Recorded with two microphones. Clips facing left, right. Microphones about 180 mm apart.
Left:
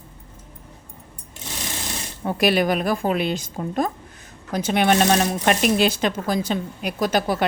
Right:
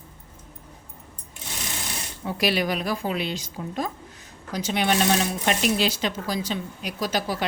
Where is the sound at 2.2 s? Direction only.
50° left (ahead or behind).